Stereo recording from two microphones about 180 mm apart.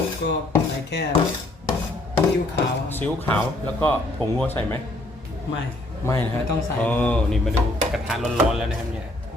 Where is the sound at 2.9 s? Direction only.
10° left (ahead or behind).